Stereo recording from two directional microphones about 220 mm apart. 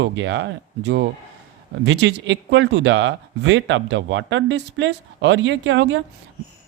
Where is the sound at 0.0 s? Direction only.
55° right (ahead or behind).